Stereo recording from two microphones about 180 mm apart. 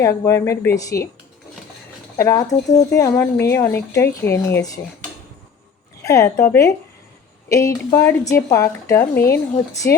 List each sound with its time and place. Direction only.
0.0 s a woman's voice: 15° left (ahead or behind)
2.1 s a woman's voice: 15° left (ahead or behind)
6.0 s a woman's voice: 15° left (ahead or behind)